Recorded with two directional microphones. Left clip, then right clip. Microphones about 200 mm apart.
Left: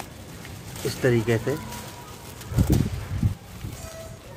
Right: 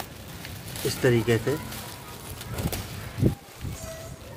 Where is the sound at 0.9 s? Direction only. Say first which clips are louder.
Even; 5° left (ahead or behind).